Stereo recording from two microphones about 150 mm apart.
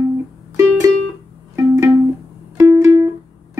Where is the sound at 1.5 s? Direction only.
15° right (ahead or behind).